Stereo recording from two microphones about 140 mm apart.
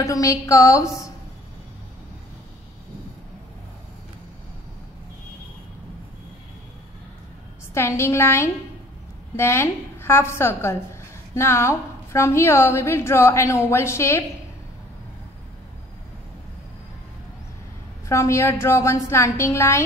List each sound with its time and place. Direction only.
0.0 s a woman's voice: 25° left (ahead or behind)
7.7 s a woman's voice: 20° left (ahead or behind)
18.0 s a woman's voice: 20° left (ahead or behind)